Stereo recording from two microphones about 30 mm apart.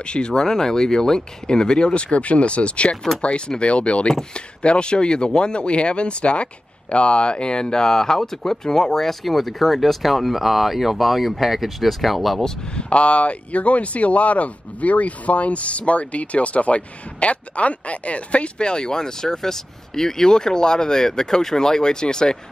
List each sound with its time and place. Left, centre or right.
0.0 s speech: left
0.3 s speech: centre
9.2 s speech: centre
12.7 s speech: left